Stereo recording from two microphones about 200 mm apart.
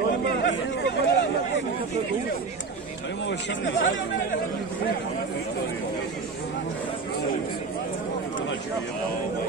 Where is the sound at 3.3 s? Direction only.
65° left (ahead or behind).